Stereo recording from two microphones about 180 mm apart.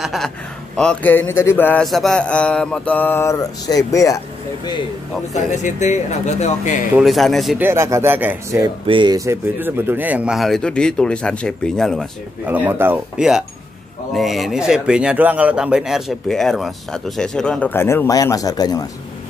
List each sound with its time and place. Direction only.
0.0 s speech: centre (ahead or behind); by 4.2 s 20° left (ahead or behind)
5.3 s speech: 40° left (ahead or behind)
7.0 s speech: centre (ahead or behind)
7.6 s speech: 15° right (ahead or behind); by 12.1 s centre (ahead or behind)
12.4 s speech: 10° right (ahead or behind); by 18.9 s 20° left (ahead or behind)